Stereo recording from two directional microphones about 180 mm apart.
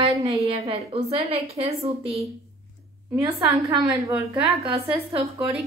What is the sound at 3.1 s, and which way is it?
Speech, 20° right (ahead or behind).